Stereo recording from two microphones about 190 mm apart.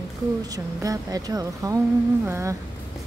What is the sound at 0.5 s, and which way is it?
Speech, 20° right (ahead or behind).